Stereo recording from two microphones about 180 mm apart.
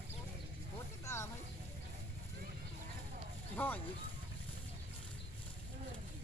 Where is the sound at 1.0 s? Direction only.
15° left (ahead or behind).